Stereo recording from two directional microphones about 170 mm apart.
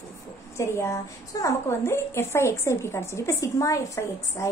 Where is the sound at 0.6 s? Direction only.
15° left (ahead or behind).